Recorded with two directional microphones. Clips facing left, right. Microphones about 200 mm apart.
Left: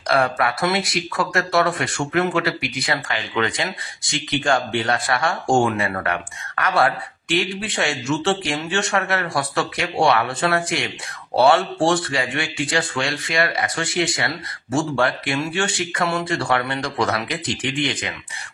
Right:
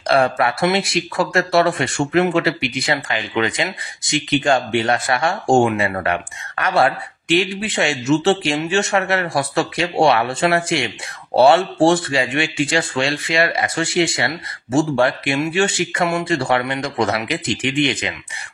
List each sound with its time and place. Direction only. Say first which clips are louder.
0.0 s speech: right 3 dB; 25° right (ahead or behind)